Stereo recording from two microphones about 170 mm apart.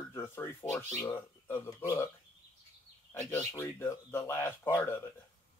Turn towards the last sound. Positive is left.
turn(degrees=15)  # may be behind; listen again after turning